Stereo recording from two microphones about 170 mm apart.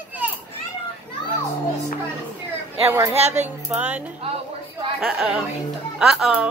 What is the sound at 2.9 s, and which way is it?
Speech, 20° right (ahead or behind).